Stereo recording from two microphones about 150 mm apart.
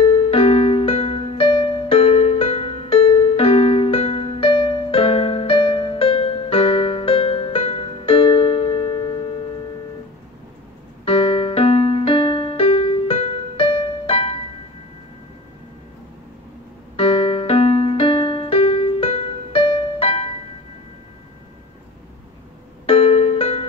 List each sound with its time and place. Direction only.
0.0 s music: 40° left (ahead or behind)
11.1 s music: 40° left (ahead or behind)
16.9 s music: 40° left (ahead or behind)
22.8 s music: 40° left (ahead or behind)